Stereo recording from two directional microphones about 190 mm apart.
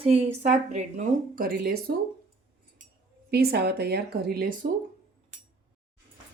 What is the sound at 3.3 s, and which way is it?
Speech, 55° right (ahead or behind).